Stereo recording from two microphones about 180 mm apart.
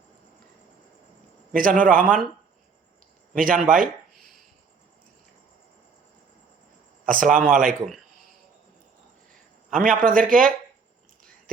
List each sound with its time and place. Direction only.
1.5 s speech: 50° right (ahead or behind)
3.3 s speech: 50° right (ahead or behind)
7.1 s speech: 50° right (ahead or behind)
9.7 s speech: 50° right (ahead or behind)